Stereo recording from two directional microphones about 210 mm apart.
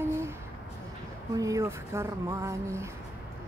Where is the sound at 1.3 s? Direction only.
15° right (ahead or behind).